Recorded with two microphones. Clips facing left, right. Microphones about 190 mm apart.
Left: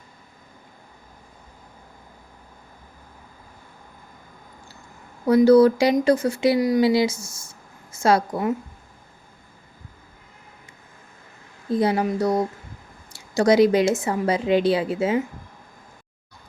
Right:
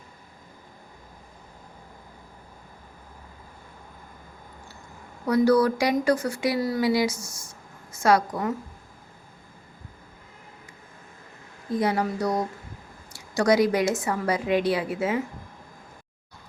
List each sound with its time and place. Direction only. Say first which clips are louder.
5.2 s speech: left 6 dB; 25° left (ahead or behind)
11.7 s speech: left 4 dB; 30° left (ahead or behind)